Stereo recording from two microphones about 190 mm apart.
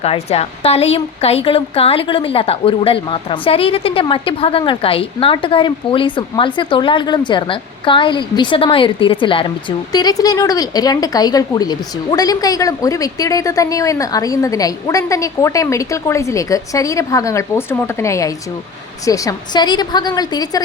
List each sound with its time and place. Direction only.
0.0 s a woman's voice: 30° left (ahead or behind)